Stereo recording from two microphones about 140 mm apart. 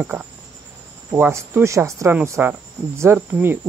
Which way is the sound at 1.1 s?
15° right (ahead or behind).